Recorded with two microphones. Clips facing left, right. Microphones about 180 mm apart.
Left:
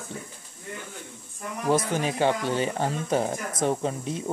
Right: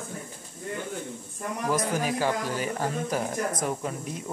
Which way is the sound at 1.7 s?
25° left (ahead or behind).